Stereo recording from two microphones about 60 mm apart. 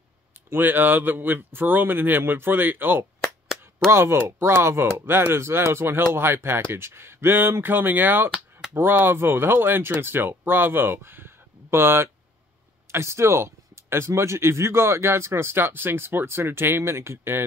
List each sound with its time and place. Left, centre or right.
0.5 s speech: right
3.9 s speech: right
8.3 s a sound: centre
8.7 s speech: right